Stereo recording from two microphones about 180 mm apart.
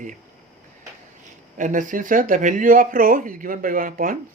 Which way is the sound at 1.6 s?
45° right (ahead or behind).